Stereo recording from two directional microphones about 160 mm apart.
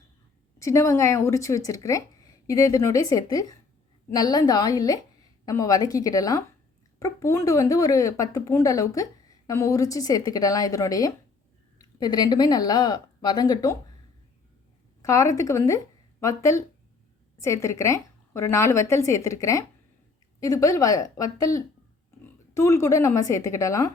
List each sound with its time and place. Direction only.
0.6 s speech: 20° left (ahead or behind)
15.0 s speech: 20° left (ahead or behind)